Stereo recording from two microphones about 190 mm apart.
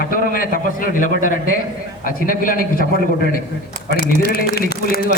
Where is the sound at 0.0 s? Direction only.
50° left (ahead or behind).